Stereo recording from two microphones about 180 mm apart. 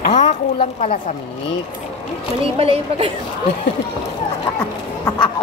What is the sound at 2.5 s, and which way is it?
Speech, 35° right (ahead or behind).